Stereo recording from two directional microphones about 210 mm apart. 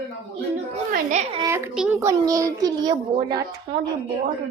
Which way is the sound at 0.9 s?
35° right (ahead or behind).